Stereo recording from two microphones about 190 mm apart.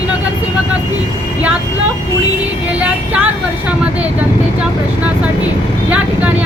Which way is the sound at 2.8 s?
5° right (ahead or behind).